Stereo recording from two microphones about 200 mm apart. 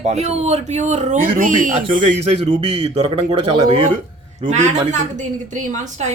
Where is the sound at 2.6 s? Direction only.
30° right (ahead or behind).